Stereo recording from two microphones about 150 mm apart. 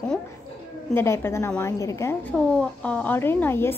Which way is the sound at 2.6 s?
10° left (ahead or behind).